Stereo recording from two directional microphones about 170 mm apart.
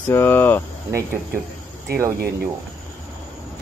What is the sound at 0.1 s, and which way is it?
Speech, 15° left (ahead or behind).